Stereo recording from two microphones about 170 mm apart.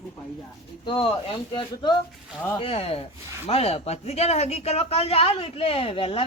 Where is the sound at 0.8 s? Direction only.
30° left (ahead or behind).